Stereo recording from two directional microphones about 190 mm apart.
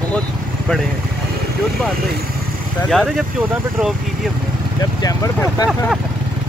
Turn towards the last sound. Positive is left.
turn(degrees=20)  # may be behind; listen again after turning